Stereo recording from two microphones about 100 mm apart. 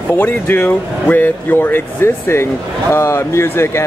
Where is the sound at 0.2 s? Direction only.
20° left (ahead or behind).